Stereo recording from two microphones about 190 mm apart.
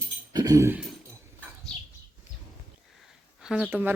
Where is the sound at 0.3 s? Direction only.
20° right (ahead or behind).